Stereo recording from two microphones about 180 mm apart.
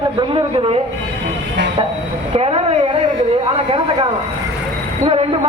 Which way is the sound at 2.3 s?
35° right (ahead or behind).